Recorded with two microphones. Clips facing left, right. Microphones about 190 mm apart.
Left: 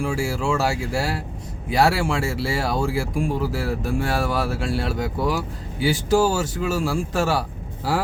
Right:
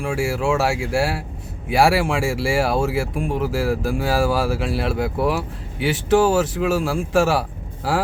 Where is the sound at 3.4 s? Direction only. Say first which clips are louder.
Right 4 dB; 90° right.